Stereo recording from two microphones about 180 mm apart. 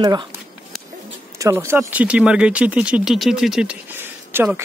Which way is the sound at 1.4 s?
15° right (ahead or behind).